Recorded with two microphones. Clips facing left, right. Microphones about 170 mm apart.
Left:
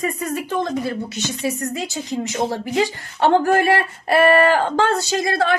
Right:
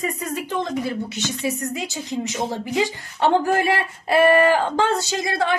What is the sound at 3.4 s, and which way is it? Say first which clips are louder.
Speech: left 3 dB; 15° right (ahead or behind).